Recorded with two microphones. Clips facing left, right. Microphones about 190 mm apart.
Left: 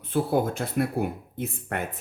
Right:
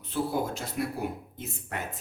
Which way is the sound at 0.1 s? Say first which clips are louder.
Left 5 dB; 55° left (ahead or behind).